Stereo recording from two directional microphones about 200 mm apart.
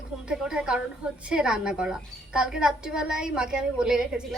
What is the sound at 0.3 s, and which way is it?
A woman's voice, 5° right (ahead or behind).